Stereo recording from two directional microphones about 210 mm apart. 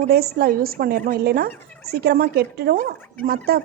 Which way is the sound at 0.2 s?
45° right (ahead or behind).